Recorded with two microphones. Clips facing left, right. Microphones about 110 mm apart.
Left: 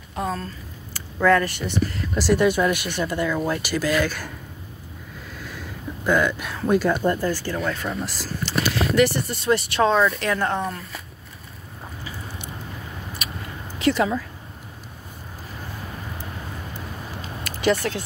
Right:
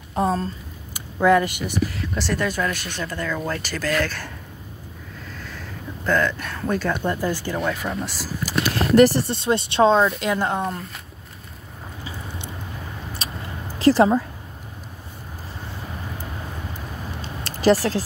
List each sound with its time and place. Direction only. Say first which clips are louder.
0.1 s speech: right 5 dB; 35° right (ahead or behind)
0.9 s speech: right 1 dB; 15° right (ahead or behind)
1.9 s speech: left 4 dB; 5° left (ahead or behind)
2.3 s speech: left 6 dB; 15° left (ahead or behind)
5.4 s a sound: left 3 dB; 10° left (ahead or behind)
7.1 s speech: left 1 dB; 15° right (ahead or behind)
7.6 s speech: right 1 dB; 5° right (ahead or behind)
8.9 s speech: right 7 dB; 40° right (ahead or behind); by 10.8 s 15° right (ahead or behind)
13.2 s vehicle: right 1 dB; 30° right (ahead or behind)
13.7 s speech: right 5 dB; 35° right (ahead or behind)
17.2 s a sound: right 3 dB; 30° right (ahead or behind)